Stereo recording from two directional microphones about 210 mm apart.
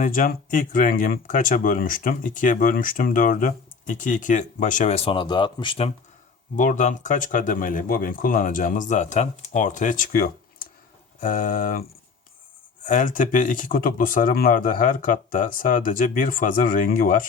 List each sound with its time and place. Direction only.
0.0 s speech: 40° left (ahead or behind); by 5.9 s 25° left (ahead or behind)
6.6 s speech: 35° left (ahead or behind)